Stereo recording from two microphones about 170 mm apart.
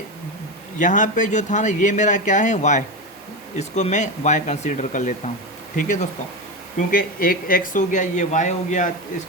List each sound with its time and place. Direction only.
0.8 s a man's voice: 50° left (ahead or behind)